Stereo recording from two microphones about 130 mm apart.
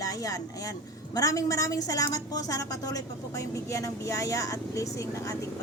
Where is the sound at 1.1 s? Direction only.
25° left (ahead or behind).